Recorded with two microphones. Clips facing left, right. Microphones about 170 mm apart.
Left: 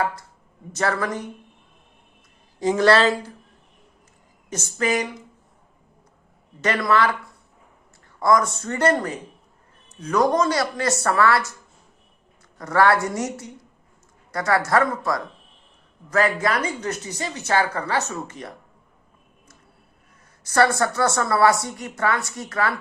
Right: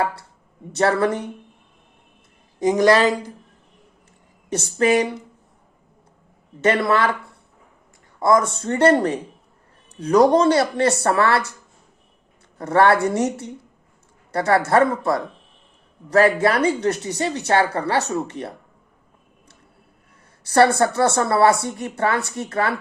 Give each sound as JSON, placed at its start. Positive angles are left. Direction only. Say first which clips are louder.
{"t": 0.0, "sound": "speech", "louder": "right 2 dB", "side_deg": -30}
{"t": 2.6, "sound": "a woman's voice", "louder": "right 2 dB", "side_deg": -15}
{"t": 4.4, "sound": "speech", "louder": "right 6 dB", "side_deg": -30}
{"t": 6.6, "sound": "speech", "louder": "right 2 dB", "side_deg": -25}
{"t": 8.2, "sound": "speech", "louder": "right 2 dB", "side_deg": -25}
{"t": 12.5, "sound": "speech", "louder": "right 3 dB", "side_deg": -25}
{"t": 20.4, "sound": "speech", "louder": "right 4 dB", "side_deg": -30}